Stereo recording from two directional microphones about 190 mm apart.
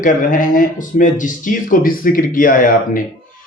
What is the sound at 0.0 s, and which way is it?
Speech, 45° left (ahead or behind).